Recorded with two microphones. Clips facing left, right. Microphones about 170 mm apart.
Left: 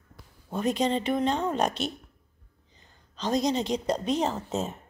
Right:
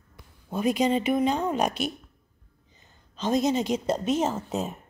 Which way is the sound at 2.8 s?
20° right (ahead or behind).